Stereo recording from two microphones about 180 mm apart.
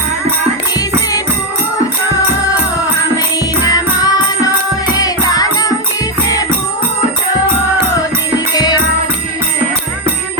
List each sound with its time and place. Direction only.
3.7 s music: 20° left (ahead or behind)
8.5 s music: 20° left (ahead or behind)